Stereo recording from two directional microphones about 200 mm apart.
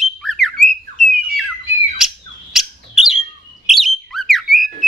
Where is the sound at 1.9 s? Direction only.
Centre (ahead or behind).